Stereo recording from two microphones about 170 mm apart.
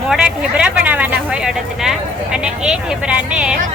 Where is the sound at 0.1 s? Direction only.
5° right (ahead or behind).